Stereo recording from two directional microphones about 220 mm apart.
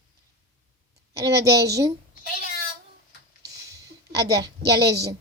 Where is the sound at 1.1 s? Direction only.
15° right (ahead or behind).